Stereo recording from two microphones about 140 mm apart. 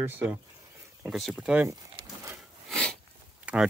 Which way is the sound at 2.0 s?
40° right (ahead or behind).